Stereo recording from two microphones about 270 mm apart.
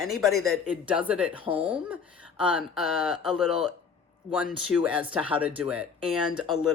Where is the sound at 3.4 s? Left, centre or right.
Left.